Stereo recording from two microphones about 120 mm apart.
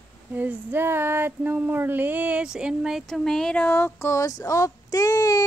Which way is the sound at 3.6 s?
20° left (ahead or behind).